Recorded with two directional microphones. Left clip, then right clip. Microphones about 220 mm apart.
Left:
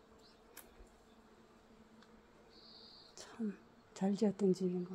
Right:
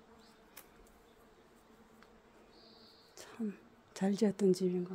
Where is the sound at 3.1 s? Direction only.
5° right (ahead or behind).